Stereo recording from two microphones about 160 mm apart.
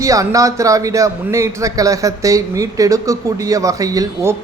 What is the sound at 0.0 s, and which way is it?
A man's voice, 20° right (ahead or behind).